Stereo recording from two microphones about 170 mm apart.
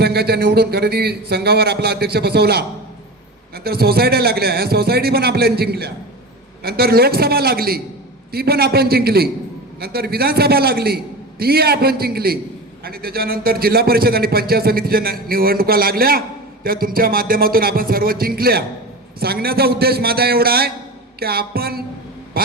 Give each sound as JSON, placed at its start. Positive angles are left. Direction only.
{"t": 0.0, "sound": "a man's voice", "side_deg": -70}
{"t": 22.3, "sound": "vehicle", "side_deg": -60}